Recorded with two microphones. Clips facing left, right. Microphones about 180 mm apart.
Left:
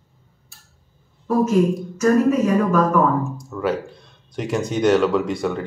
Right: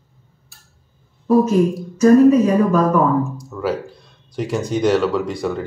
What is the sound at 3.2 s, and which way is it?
Speech, centre (ahead or behind).